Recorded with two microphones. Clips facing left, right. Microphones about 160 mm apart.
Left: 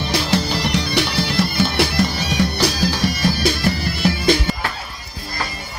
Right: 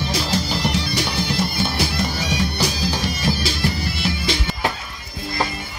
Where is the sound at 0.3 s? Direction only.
65° left (ahead or behind).